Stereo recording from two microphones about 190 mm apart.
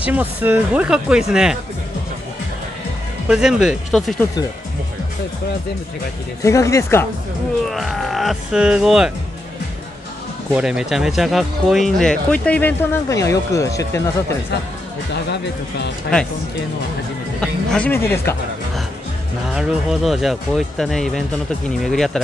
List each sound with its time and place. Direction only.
0.0 s speech: 10° right (ahead or behind)
3.3 s speech: 5° right (ahead or behind)
6.4 s speech: 15° left (ahead or behind)
7.6 s speech: centre (ahead or behind)
10.5 s speech: 5° right (ahead or behind); by 14.0 s 15° left (ahead or behind)
15.3 s speech: 60° left (ahead or behind)
17.4 s speech: 5° left (ahead or behind)
19.5 s speech: centre (ahead or behind)